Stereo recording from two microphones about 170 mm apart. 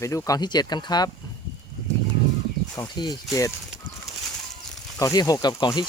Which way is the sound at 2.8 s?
25° left (ahead or behind).